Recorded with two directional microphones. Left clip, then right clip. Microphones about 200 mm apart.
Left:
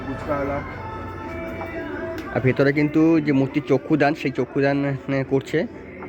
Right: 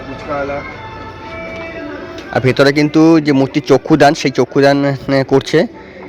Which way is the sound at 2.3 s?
10° right (ahead or behind).